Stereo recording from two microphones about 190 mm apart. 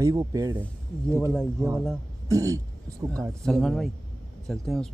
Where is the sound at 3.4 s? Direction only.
5° left (ahead or behind).